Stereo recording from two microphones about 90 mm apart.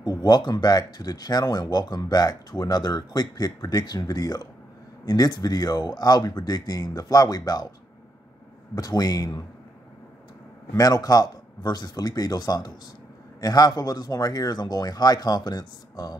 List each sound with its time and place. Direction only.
0.2 s speech: 50° left (ahead or behind)
8.7 s speech: 45° left (ahead or behind)
10.8 s speech: 45° left (ahead or behind)